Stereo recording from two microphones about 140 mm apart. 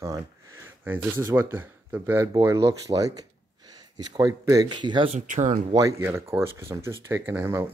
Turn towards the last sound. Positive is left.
turn(degrees=-20)  # may be behind; listen again after turning